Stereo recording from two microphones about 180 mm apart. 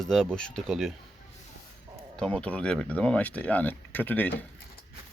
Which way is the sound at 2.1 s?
5° left (ahead or behind).